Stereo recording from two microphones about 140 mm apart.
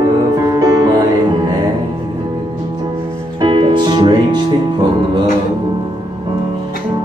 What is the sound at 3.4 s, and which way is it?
Music, 35° right (ahead or behind).